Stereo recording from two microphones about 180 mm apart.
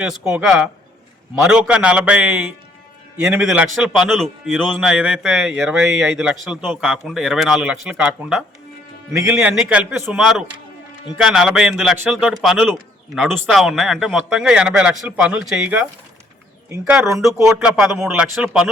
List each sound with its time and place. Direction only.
0.0 s a man's voice: 5° right (ahead or behind)
17.3 s a man's voice: 15° right (ahead or behind)
17.6 s a man's voice: 5° right (ahead or behind)